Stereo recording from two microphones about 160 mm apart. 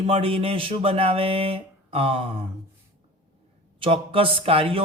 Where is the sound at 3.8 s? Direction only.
35° right (ahead or behind).